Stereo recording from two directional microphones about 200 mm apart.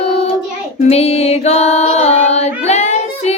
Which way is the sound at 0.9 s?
30° left (ahead or behind).